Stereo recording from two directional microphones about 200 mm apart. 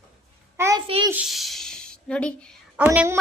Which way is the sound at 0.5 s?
15° right (ahead or behind).